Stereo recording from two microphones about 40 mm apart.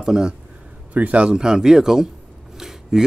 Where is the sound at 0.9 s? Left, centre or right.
Right.